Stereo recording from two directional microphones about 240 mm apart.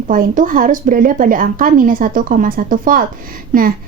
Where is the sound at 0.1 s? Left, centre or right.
Right.